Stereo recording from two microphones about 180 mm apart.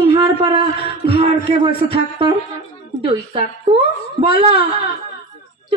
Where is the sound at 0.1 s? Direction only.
20° right (ahead or behind).